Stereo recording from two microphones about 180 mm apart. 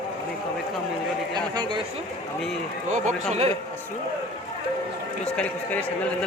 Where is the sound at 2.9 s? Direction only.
45° right (ahead or behind).